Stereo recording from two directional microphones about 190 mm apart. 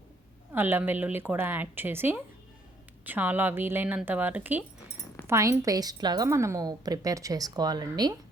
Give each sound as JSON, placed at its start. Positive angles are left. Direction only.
{"t": 0.5, "sound": "a woman's voice", "side_deg": -10}